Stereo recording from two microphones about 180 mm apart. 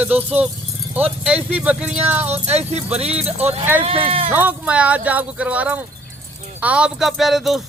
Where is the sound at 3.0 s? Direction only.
35° right (ahead or behind).